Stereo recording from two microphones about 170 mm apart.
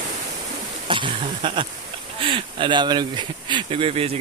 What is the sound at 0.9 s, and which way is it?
Speech, 30° right (ahead or behind).